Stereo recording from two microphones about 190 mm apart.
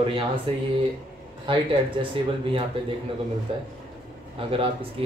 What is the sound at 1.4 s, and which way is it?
Speech, 25° right (ahead or behind).